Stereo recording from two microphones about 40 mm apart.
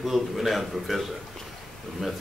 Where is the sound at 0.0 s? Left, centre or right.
Centre.